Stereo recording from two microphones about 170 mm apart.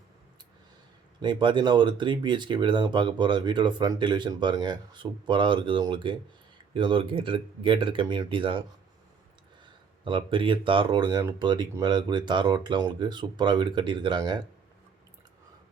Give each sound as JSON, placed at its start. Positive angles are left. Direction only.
{"t": 1.2, "sound": "speech", "side_deg": -25}
{"t": 10.0, "sound": "speech", "side_deg": -30}